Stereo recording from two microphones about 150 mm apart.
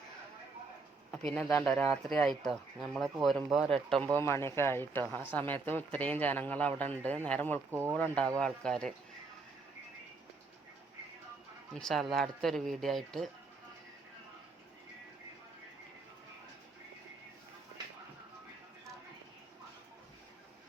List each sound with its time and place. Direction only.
1.3 s speech: 10° left (ahead or behind)
4.2 s speech: 15° left (ahead or behind)
7.7 s speech: 15° right (ahead or behind)
7.9 s speech: 10° left (ahead or behind)
11.7 s speech: 5° left (ahead or behind)